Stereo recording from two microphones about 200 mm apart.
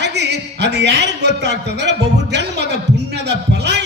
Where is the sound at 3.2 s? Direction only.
60° right (ahead or behind).